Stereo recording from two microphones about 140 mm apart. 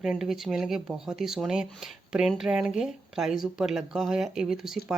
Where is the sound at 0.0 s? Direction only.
Centre (ahead or behind).